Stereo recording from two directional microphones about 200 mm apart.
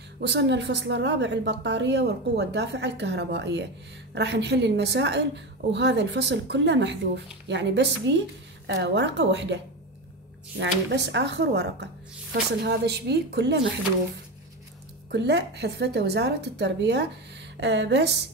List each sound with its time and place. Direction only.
0.2 s a woman's voice: 60° right (ahead or behind)
10.6 s a woman's voice: 60° right (ahead or behind)
15.0 s a woman's voice: 55° right (ahead or behind)